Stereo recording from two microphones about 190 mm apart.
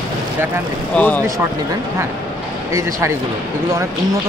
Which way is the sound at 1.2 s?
15° right (ahead or behind).